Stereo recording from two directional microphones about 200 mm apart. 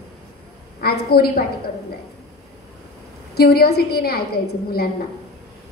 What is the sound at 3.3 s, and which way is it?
Speech, 50° left (ahead or behind).